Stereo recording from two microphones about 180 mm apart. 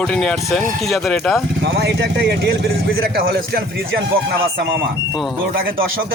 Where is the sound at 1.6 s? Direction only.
70° right (ahead or behind).